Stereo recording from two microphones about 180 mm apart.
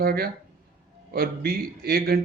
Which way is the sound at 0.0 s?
60° right (ahead or behind).